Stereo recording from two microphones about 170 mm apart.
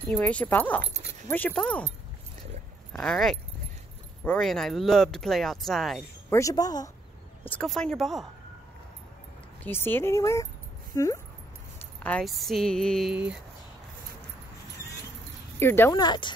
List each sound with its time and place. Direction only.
0.1 s speech: 10° left (ahead or behind)
2.9 s speech: 5° left (ahead or behind)
6.3 s speech: 20° left (ahead or behind)
7.4 s speech: 5° left (ahead or behind)
9.6 s speech: 10° left (ahead or behind)
12.0 s speech: 5° left (ahead or behind)
15.6 s speech: 15° left (ahead or behind)
16.0 s speech: 25° left (ahead or behind)